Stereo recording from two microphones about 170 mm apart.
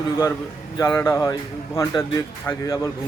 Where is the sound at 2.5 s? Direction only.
20° left (ahead or behind).